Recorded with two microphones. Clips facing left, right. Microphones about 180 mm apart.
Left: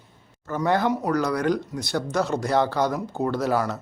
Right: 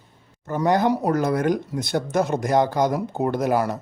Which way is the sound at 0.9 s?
35° right (ahead or behind).